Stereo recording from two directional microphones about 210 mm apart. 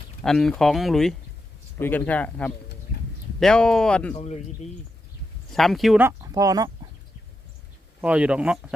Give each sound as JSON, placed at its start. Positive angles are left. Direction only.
{"t": 0.2, "sound": "speech", "side_deg": 0}
{"t": 2.9, "sound": "a sound", "side_deg": 50}
{"t": 3.4, "sound": "speech", "side_deg": 5}
{"t": 4.1, "sound": "speech", "side_deg": 30}
{"t": 5.5, "sound": "speech", "side_deg": 0}
{"t": 8.0, "sound": "speech", "side_deg": -5}